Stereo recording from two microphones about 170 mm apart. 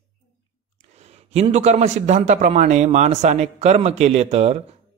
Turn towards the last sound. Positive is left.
turn(degrees=-40)  # may be behind; listen again after turning